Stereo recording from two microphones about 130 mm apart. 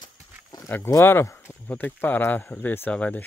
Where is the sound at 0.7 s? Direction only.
20° left (ahead or behind).